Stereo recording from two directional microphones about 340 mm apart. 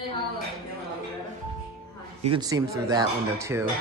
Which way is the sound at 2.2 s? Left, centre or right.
Centre.